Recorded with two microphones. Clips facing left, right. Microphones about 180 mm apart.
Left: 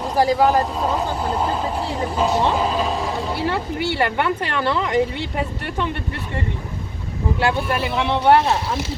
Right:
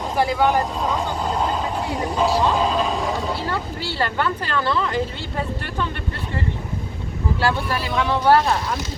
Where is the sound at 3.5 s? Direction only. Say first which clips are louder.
Left 4 dB; 25° left (ahead or behind).